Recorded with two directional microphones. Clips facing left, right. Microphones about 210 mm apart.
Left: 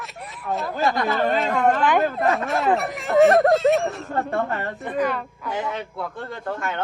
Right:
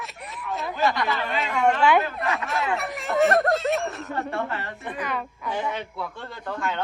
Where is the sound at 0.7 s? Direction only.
50° left (ahead or behind).